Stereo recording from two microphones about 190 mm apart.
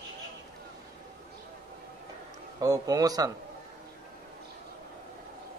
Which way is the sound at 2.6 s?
20° right (ahead or behind).